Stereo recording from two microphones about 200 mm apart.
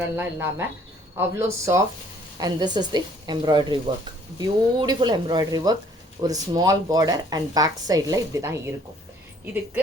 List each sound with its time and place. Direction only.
0.2 s a woman's voice: 10° right (ahead or behind)